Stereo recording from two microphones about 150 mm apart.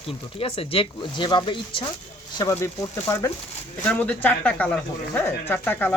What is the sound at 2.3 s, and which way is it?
Speech, 20° left (ahead or behind).